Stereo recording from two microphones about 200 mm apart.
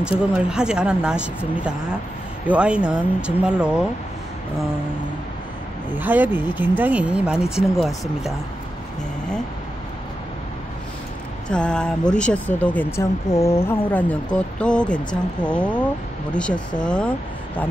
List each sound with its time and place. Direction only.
0.2 s speech: 5° right (ahead or behind)
5.9 s speech: 10° right (ahead or behind)
11.4 s speech: 5° left (ahead or behind)